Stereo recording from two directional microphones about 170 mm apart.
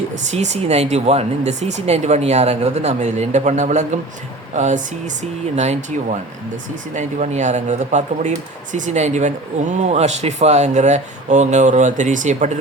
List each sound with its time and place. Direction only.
0.3 s speech: 40° right (ahead or behind)